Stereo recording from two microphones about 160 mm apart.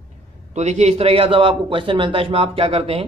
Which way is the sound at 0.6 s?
45° right (ahead or behind).